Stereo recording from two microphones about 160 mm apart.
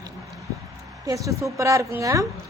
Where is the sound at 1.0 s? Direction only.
20° right (ahead or behind).